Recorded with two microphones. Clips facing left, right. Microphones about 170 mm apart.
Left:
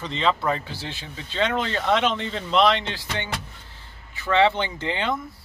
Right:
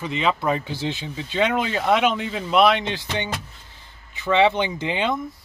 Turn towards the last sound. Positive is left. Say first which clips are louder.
# right 3 dB
turn(degrees=-15)  # may be behind; listen again after turning